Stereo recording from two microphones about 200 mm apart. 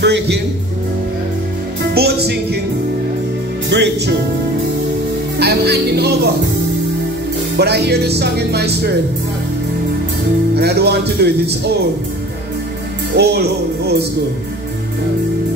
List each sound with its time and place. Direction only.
0.0 s speech: 60° right (ahead or behind)
2.0 s music: 55° right (ahead or behind)
3.7 s music: 60° right (ahead or behind)
5.4 s music: 55° right (ahead or behind)
7.5 s speech: 55° right (ahead or behind)
10.5 s speech: 55° right (ahead or behind)
13.1 s speech: 55° right (ahead or behind)